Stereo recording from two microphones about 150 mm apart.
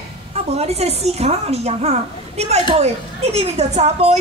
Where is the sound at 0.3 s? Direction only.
45° right (ahead or behind).